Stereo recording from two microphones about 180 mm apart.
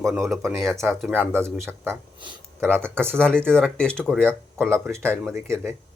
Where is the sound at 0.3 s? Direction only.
Centre (ahead or behind).